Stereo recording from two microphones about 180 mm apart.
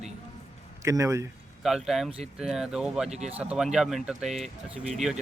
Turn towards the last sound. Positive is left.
turn(degrees=0)  # may be behind; listen again after turning